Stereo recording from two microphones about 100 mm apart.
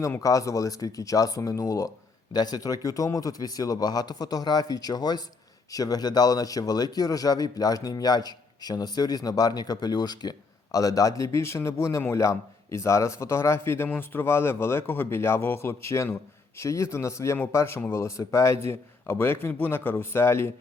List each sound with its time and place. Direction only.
0.0 s a man's voice: 30° left (ahead or behind); by 18.0 s 15° left (ahead or behind)
18.0 s a man's voice: 30° left (ahead or behind)